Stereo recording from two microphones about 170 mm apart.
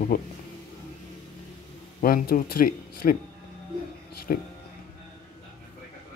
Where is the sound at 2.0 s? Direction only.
55° left (ahead or behind).